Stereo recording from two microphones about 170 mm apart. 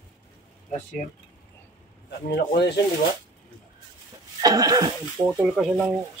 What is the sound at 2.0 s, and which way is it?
Speech, 80° left.